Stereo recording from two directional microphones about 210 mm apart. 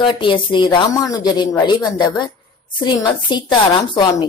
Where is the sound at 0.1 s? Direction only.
20° left (ahead or behind).